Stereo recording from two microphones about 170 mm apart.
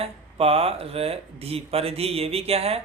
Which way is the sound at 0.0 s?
35° right (ahead or behind).